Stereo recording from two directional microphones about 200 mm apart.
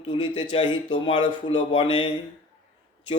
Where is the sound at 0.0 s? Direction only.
25° left (ahead or behind).